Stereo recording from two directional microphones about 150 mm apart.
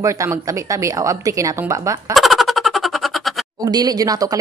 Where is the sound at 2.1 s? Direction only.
Centre (ahead or behind).